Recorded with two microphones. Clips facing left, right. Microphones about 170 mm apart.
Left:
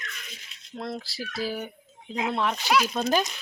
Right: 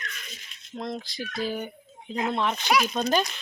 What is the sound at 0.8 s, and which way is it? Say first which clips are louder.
Speech: right 1 dB; centre (ahead or behind).